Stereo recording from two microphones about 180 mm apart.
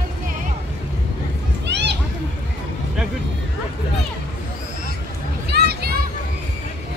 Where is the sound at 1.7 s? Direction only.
75° right (ahead or behind).